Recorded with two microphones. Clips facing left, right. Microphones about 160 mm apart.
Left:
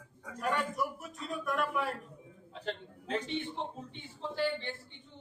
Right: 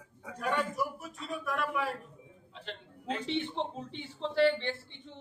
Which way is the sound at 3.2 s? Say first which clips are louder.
Right 4 dB; 90° right.